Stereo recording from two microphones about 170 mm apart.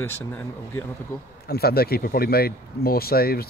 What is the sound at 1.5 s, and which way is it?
Speech, 65° left (ahead or behind).